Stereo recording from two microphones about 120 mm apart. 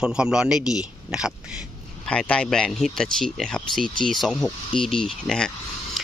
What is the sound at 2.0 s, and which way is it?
A man's voice, 10° left (ahead or behind).